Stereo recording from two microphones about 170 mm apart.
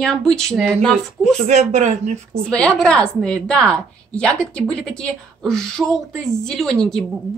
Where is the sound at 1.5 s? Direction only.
45° right (ahead or behind).